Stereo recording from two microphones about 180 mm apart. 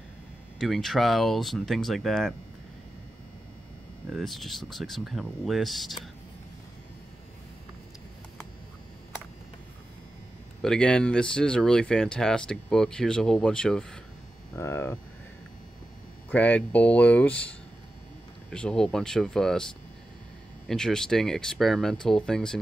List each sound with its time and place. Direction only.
0.6 s speech: centre (ahead or behind)
4.1 s speech: centre (ahead or behind)
10.6 s speech: 5° left (ahead or behind)
16.3 s speech: 10° left (ahead or behind)
20.6 s speech: 5° left (ahead or behind)